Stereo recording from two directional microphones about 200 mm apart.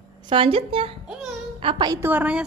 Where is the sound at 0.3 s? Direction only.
25° right (ahead or behind).